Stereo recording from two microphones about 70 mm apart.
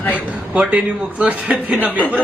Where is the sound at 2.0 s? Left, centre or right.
Left.